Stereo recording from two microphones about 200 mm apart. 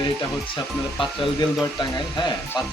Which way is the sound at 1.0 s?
25° left (ahead or behind).